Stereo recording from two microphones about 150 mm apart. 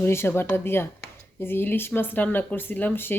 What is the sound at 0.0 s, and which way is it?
A woman's voice, 15° left (ahead or behind).